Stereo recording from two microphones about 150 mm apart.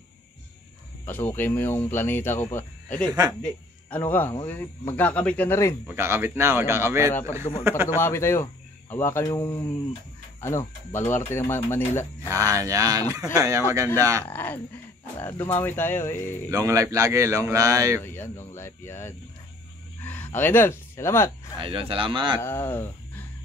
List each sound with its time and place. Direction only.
1.0 s speech: 15° left (ahead or behind)
3.1 s a man's voice: 25° right (ahead or behind)
3.9 s speech: 10° left (ahead or behind)
5.9 s speech: 15° right (ahead or behind)
8.0 s speech: 15° left (ahead or behind)
12.3 s a man's voice: 20° right (ahead or behind)
14.2 s speech: 10° left (ahead or behind)
16.4 s a man's voice: 20° right (ahead or behind)
18.0 s speech: 15° left (ahead or behind)
21.5 s speech: 35° right (ahead or behind)
22.4 s speech: 15° left (ahead or behind)